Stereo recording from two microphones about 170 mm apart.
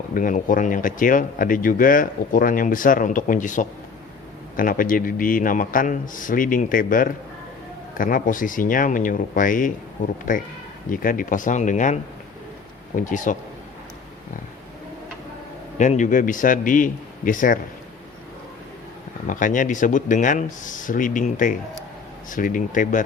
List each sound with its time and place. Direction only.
0.1 s speech: 55° left (ahead or behind)
10.8 s speech: 55° left (ahead or behind)
13.1 s speech: 50° left (ahead or behind)
15.8 s speech: 45° left (ahead or behind)
19.3 s speech: 50° left (ahead or behind)